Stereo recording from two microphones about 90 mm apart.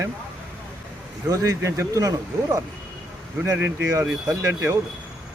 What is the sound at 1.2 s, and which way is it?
Speech, 40° right (ahead or behind).